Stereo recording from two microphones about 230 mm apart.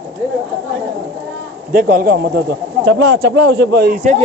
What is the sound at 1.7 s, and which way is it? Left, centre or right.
A man's voice, right.